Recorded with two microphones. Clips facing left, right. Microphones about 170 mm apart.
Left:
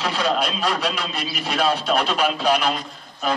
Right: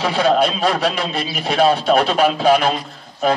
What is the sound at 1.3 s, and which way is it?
Speech, 55° right (ahead or behind).